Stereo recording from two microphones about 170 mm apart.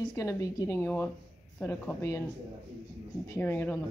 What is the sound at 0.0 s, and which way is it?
Speech, 20° left (ahead or behind).